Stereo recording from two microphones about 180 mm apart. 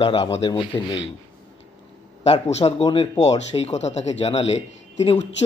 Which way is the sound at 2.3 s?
35° left (ahead or behind).